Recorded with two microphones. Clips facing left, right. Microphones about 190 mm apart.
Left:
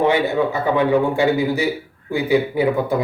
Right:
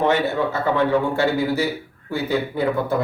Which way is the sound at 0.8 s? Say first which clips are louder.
Left 3 dB; 15° left (ahead or behind).